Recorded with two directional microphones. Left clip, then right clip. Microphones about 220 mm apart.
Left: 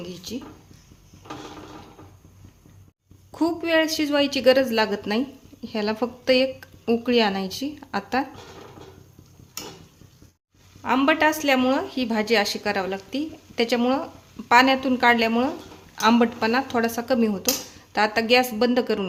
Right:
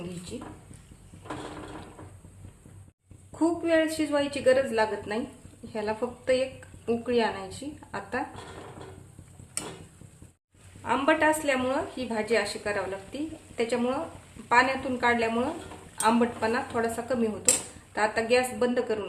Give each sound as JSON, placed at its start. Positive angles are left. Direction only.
{"t": 3.3, "sound": "a woman's voice", "side_deg": 45}
{"t": 10.8, "sound": "a woman's voice", "side_deg": 40}